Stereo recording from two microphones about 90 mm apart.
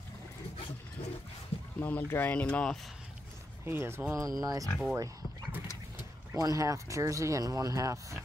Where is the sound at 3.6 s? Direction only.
25° right (ahead or behind).